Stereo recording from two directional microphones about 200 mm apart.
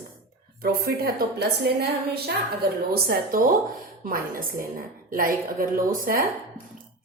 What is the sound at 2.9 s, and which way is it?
A woman's voice, 45° right (ahead or behind).